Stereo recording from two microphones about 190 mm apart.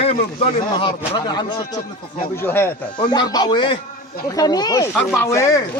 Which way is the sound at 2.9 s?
20° left (ahead or behind).